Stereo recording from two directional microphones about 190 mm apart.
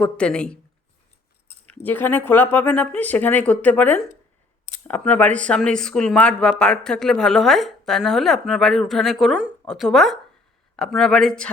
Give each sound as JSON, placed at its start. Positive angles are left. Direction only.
{"t": 0.0, "sound": "speech", "side_deg": 5}
{"t": 1.6, "sound": "speech", "side_deg": 10}